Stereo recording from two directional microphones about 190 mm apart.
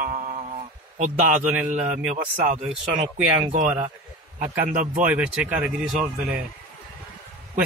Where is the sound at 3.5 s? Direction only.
40° right (ahead or behind).